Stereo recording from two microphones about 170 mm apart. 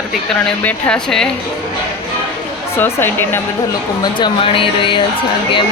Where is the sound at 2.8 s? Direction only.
10° left (ahead or behind).